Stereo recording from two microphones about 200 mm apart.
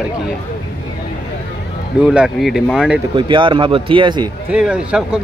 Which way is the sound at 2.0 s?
5° right (ahead or behind).